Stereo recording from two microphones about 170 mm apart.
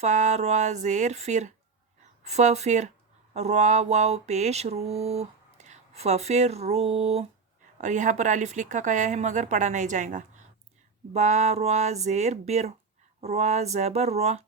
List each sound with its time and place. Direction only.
0.0 s speech: 45° right (ahead or behind)
3.3 s mantra: 40° right (ahead or behind)
7.8 s speech: 45° right (ahead or behind)
11.1 s mantra: 40° right (ahead or behind)